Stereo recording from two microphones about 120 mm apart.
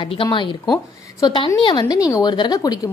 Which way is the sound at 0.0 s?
45° left (ahead or behind).